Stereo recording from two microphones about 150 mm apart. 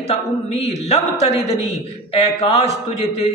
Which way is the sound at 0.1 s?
45° left (ahead or behind).